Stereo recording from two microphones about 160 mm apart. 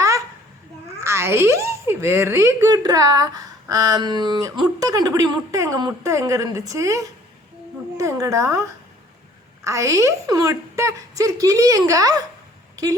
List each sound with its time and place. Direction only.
1.0 s a child's voice: 15° right (ahead or behind)
9.6 s a child's voice: 20° right (ahead or behind)